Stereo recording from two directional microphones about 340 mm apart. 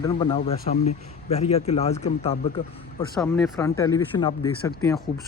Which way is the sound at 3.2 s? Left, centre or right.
Centre.